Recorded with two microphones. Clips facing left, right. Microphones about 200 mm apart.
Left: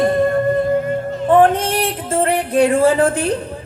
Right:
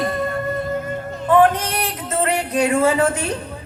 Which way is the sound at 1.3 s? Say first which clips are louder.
Left 2 dB; 30° left (ahead or behind).